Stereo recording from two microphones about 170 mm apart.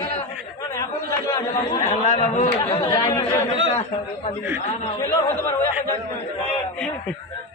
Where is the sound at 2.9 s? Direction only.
20° left (ahead or behind).